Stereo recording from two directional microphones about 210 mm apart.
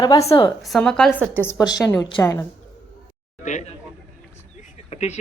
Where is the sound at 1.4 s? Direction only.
15° left (ahead or behind).